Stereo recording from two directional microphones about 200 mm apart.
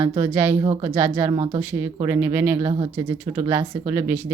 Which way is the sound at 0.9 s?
10° right (ahead or behind).